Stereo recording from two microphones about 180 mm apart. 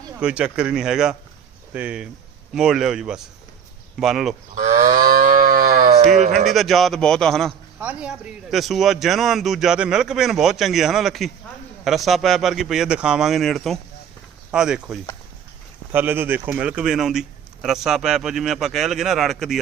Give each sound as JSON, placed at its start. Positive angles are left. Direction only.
{"t": 0.2, "sound": "speech", "side_deg": -5}
{"t": 4.5, "sound": "cattle", "side_deg": -45}
{"t": 4.8, "sound": "livestock", "side_deg": -20}
{"t": 5.0, "sound": "livestock", "side_deg": -50}
{"t": 6.0, "sound": "speech", "side_deg": -40}
{"t": 6.3, "sound": "speech", "side_deg": 0}
{"t": 7.8, "sound": "speech", "side_deg": -10}